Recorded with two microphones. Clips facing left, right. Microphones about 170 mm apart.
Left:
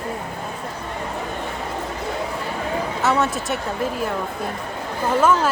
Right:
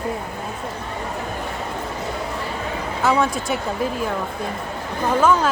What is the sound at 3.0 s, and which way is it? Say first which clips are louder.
Speech: right 3 dB; centre (ahead or behind).